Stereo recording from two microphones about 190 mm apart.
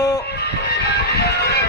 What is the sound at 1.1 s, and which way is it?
Music, 60° left (ahead or behind).